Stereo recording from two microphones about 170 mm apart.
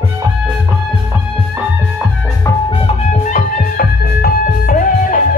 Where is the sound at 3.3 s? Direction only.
55° left (ahead or behind).